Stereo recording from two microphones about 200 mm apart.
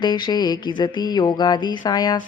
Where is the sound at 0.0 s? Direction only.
20° left (ahead or behind).